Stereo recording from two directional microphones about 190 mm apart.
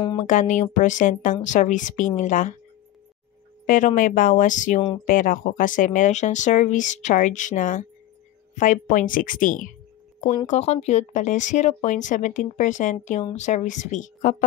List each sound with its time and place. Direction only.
0.2 s speech: 40° left (ahead or behind)
3.6 s speech: 45° left (ahead or behind)